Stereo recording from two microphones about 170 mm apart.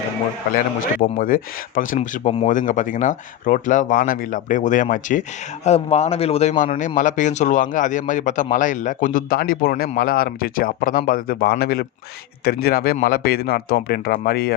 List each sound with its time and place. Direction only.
1.2 s speech: 55° left (ahead or behind)
5.6 s speech: 40° left (ahead or behind); by 14.5 s 65° left (ahead or behind)